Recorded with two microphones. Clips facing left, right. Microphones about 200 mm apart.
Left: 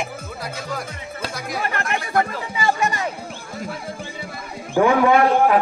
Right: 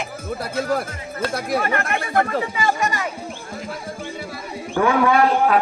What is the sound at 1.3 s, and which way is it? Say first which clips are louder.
Speech: right 6 dB; 55° right (ahead or behind).